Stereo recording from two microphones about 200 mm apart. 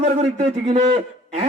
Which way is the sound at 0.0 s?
35° right (ahead or behind).